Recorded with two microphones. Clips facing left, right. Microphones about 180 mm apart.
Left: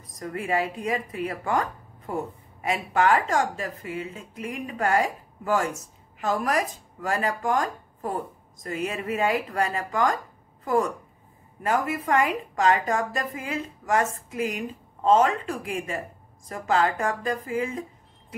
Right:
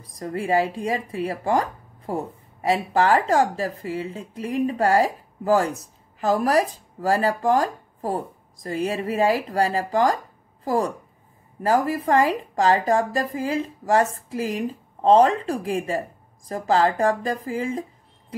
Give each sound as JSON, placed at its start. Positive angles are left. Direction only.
{"t": 0.1, "sound": "speech", "side_deg": -30}